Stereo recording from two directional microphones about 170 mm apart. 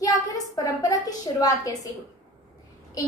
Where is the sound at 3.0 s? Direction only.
20° left (ahead or behind).